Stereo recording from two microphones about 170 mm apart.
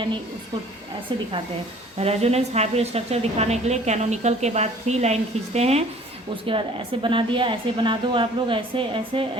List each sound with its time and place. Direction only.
2.0 s a woman's voice: 35° right (ahead or behind)